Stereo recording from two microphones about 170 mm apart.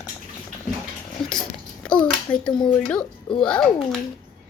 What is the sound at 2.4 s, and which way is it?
Speech, 25° left (ahead or behind).